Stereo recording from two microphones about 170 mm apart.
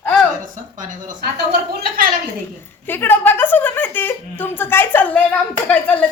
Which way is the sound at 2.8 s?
10° left (ahead or behind).